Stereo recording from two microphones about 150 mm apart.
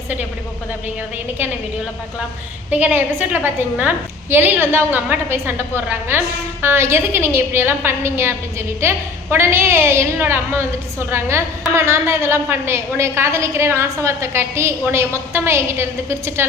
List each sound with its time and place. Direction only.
2.6 s a woman's voice: 10° right (ahead or behind)